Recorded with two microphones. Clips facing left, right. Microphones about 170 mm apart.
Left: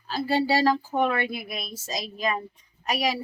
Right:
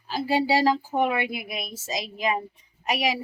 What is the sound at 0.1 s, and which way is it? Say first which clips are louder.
Speech: right 1 dB; 15° right (ahead or behind).